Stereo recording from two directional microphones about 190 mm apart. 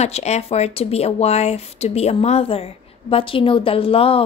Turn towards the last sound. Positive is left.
turn(degrees=30)  # may be behind; listen again after turning